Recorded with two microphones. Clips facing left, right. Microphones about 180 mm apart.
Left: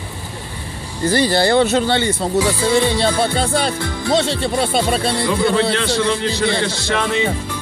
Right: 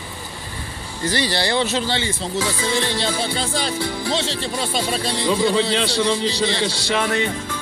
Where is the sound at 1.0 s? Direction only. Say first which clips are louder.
Left 7 dB; 50° left (ahead or behind).